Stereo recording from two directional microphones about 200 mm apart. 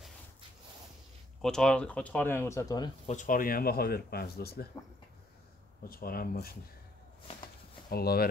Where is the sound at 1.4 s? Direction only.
5° left (ahead or behind).